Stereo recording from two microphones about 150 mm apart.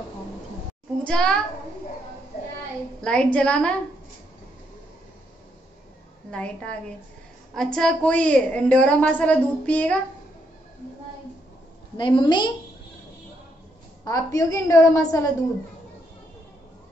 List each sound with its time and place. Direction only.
1.0 s a child's voice: 5° left (ahead or behind)
3.0 s a woman's voice: 5° left (ahead or behind)
6.3 s a woman's voice: 10° left (ahead or behind)
12.0 s a woman's voice: 30° left (ahead or behind)
14.0 s a woman's voice: 25° left (ahead or behind)